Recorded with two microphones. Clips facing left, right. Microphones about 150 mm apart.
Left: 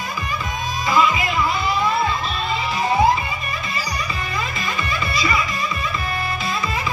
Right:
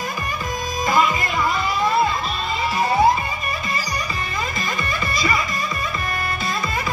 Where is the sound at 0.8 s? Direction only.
45° right (ahead or behind).